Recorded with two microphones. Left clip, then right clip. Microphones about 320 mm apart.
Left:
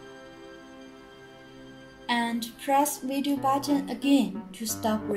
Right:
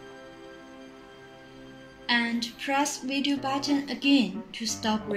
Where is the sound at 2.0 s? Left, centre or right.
Left.